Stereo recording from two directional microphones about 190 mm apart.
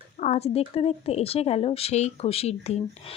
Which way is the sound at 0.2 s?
35° left (ahead or behind).